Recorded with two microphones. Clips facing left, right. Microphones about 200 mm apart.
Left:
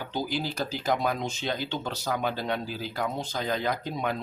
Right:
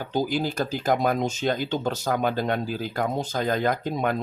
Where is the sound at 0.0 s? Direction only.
45° right (ahead or behind).